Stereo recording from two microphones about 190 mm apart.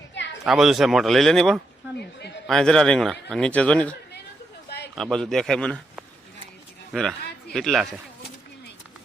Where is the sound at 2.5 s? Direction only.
Centre (ahead or behind).